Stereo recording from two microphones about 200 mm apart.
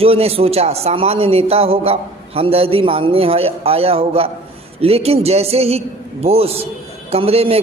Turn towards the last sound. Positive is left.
turn(degrees=-30)  # may be behind; listen again after turning